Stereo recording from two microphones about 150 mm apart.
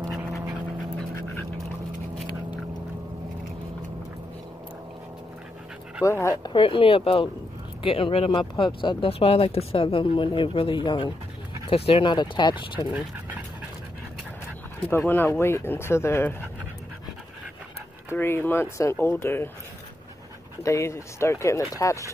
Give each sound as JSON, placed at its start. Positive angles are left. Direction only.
{"t": 6.0, "sound": "speech", "side_deg": 15}
{"t": 6.4, "sound": "speech", "side_deg": 35}
{"t": 14.9, "sound": "speech", "side_deg": 15}
{"t": 18.1, "sound": "speech", "side_deg": 15}
{"t": 20.6, "sound": "speech", "side_deg": 20}